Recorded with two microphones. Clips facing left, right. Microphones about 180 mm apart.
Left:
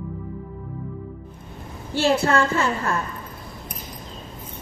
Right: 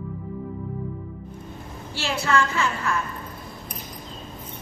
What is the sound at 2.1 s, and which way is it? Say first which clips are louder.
Speech: left 4 dB; 45° left (ahead or behind).